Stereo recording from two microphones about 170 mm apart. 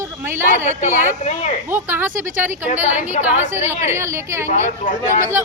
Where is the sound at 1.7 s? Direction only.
10° right (ahead or behind).